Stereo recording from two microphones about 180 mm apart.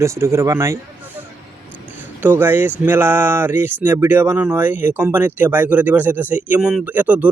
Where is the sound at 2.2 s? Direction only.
10° right (ahead or behind).